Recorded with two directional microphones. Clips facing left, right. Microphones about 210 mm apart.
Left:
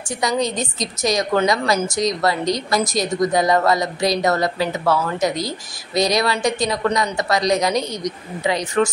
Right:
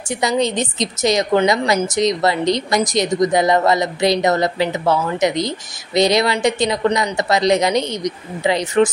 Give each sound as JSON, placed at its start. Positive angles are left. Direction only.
{"t": 0.2, "sound": "a woman's voice", "side_deg": -25}
{"t": 7.8, "sound": "speech", "side_deg": 0}
{"t": 8.5, "sound": "a woman's voice", "side_deg": -25}